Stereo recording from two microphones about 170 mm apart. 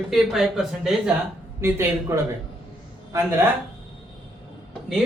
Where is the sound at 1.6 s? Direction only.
15° right (ahead or behind).